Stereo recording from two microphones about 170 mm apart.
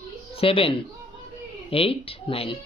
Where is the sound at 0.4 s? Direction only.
35° left (ahead or behind).